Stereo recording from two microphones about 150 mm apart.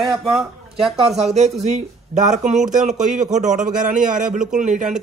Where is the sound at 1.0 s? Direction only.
45° right (ahead or behind).